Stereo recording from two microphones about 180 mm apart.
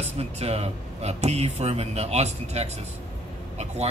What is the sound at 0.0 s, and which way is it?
Speech, 35° right (ahead or behind).